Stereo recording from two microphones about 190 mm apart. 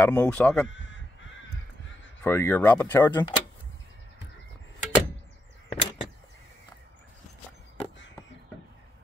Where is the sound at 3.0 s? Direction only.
20° left (ahead or behind).